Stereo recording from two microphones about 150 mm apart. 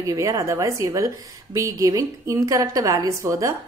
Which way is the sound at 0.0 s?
20° right (ahead or behind).